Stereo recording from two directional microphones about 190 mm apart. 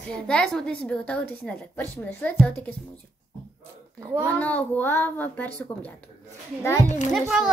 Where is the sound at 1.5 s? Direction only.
10° left (ahead or behind).